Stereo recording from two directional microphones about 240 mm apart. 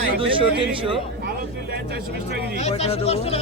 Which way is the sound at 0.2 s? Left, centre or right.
Right.